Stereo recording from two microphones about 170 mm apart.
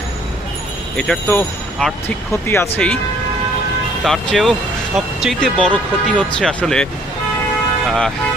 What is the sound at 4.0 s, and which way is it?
Speech, centre (ahead or behind).